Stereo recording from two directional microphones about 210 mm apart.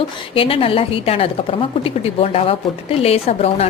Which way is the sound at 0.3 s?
25° left (ahead or behind).